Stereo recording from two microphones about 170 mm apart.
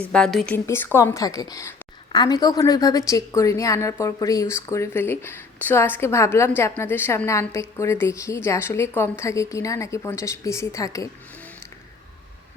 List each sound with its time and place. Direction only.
0.1 s a woman's voice: 5° left (ahead or behind); by 11.1 s 20° left (ahead or behind)